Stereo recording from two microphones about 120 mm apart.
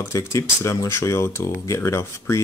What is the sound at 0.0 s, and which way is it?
Speech, 25° left (ahead or behind).